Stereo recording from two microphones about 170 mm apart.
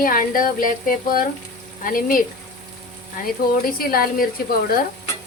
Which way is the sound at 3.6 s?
55° left (ahead or behind).